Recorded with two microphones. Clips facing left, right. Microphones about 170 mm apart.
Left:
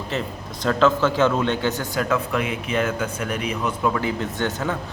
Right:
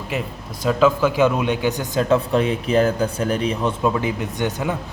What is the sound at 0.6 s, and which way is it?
A man's voice, 10° right (ahead or behind).